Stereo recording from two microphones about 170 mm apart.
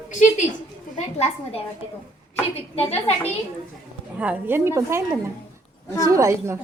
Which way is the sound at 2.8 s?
35° left (ahead or behind).